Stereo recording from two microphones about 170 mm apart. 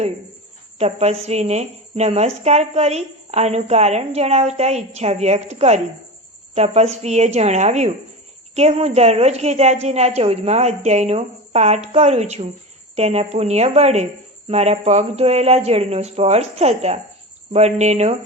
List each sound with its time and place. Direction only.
0.8 s speech: 40° right (ahead or behind)